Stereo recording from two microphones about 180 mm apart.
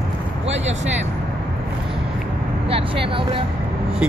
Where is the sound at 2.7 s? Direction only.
30° right (ahead or behind).